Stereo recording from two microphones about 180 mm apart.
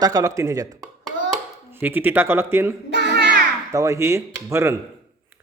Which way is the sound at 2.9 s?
70° right (ahead or behind).